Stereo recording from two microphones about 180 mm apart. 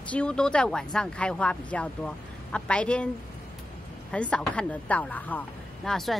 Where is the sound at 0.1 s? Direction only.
5° left (ahead or behind).